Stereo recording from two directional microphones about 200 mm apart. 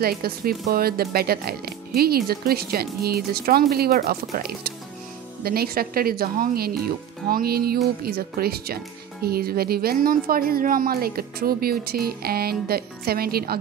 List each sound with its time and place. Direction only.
0.0 s speech: 50° right (ahead or behind)